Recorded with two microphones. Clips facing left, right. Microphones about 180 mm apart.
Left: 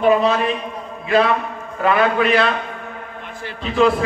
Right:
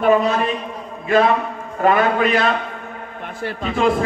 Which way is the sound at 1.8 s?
45° right (ahead or behind).